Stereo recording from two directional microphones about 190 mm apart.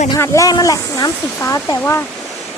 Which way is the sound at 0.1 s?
15° left (ahead or behind).